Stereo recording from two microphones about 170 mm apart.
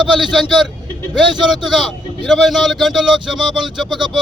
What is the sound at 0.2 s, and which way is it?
Speech, centre (ahead or behind).